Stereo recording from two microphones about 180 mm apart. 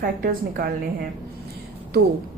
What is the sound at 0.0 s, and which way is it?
Speech, 55° right (ahead or behind).